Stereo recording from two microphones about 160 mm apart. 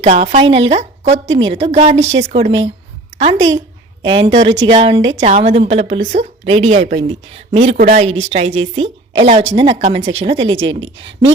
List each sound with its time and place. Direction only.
0.0 s a woman's voice: 45° right (ahead or behind)
5.2 s a woman's voice: 45° right (ahead or behind)